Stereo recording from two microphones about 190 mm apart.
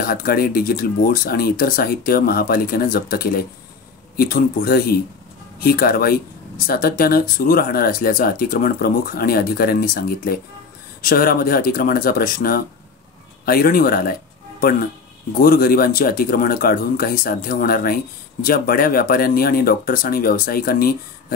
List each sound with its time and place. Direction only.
0.0 s speech: 50° left (ahead or behind)
15.3 s speech: 50° left (ahead or behind)